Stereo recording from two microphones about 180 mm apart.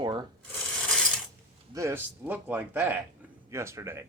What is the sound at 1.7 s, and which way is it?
Speech, 15° right (ahead or behind).